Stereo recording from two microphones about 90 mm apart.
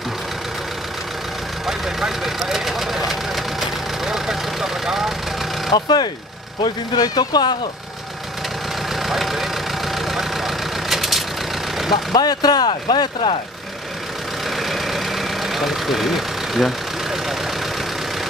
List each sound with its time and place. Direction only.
1.7 s speech: 5° right (ahead or behind)
4.0 s vehicle: 5° right (ahead or behind)
5.7 s speech: 50° left (ahead or behind)
9.0 s vehicle: centre (ahead or behind)
11.9 s speech: 50° left (ahead or behind)
14.6 s vehicle: centre (ahead or behind)